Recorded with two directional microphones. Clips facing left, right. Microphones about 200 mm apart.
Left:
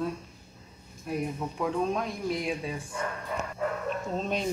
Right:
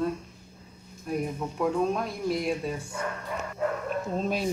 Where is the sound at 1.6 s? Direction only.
Centre (ahead or behind).